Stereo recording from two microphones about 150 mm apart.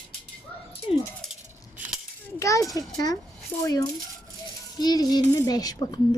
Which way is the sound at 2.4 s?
20° left (ahead or behind).